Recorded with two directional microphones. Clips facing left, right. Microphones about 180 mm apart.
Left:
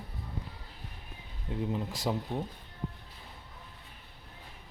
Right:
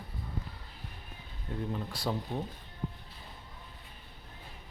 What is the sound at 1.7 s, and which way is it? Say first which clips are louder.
Speech: left 1 dB; 15° left (ahead or behind).